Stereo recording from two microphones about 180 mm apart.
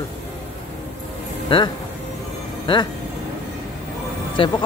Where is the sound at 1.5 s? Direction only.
25° left (ahead or behind).